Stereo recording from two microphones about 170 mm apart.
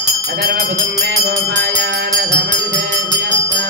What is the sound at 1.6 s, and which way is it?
Music, 90° right.